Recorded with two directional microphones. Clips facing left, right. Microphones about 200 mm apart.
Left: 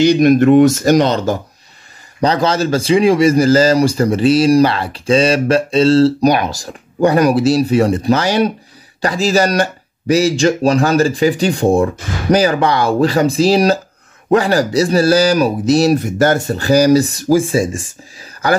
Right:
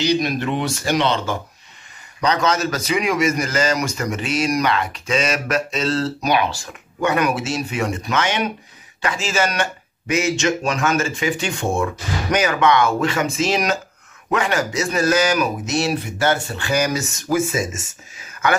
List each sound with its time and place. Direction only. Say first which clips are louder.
0.0 s speech: left 11 dB; 50° left (ahead or behind); by 6.3 s 30° left (ahead or behind)
6.3 s speech: left 2 dB; 40° left (ahead or behind)